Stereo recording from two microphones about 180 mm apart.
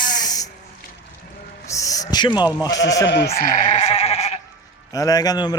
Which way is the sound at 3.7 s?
40° left (ahead or behind).